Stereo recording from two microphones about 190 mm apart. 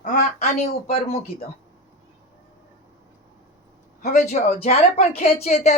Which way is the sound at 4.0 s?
40° left (ahead or behind).